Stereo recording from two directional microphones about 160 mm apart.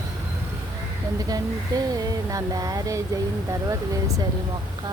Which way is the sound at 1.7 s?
25° right (ahead or behind).